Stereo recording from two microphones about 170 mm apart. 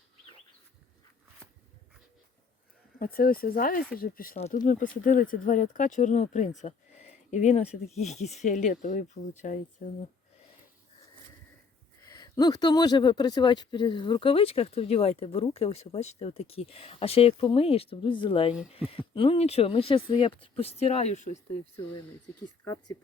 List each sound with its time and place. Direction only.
3.0 s speech: 60° left (ahead or behind)
4.4 s speech: 45° left (ahead or behind)
6.6 s a sound: 45° left (ahead or behind)
7.9 s speech: 40° left (ahead or behind)
12.0 s speech: 25° left (ahead or behind); by 21.3 s 40° left (ahead or behind)
22.6 s a woman's voice: 20° left (ahead or behind)